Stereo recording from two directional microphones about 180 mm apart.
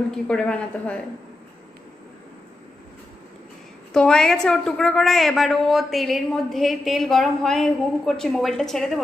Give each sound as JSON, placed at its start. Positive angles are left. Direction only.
{"t": 0.1, "sound": "a woman's voice", "side_deg": 5}
{"t": 3.9, "sound": "a woman's voice", "side_deg": 5}